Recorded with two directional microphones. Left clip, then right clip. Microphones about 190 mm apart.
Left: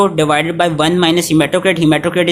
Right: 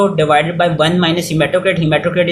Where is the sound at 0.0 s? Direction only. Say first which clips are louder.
Right 1 dB; 45° left (ahead or behind).